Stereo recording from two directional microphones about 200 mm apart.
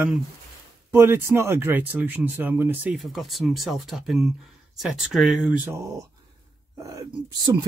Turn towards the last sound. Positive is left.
turn(degrees=-20)  # may be behind; listen again after turning